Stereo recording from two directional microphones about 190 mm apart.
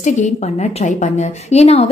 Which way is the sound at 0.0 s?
40° left (ahead or behind).